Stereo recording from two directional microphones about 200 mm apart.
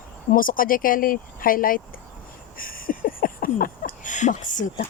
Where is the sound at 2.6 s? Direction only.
45° left (ahead or behind).